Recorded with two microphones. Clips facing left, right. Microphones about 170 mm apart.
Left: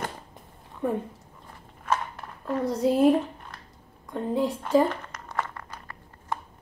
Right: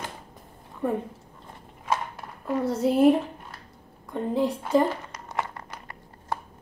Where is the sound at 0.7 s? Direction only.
Centre (ahead or behind).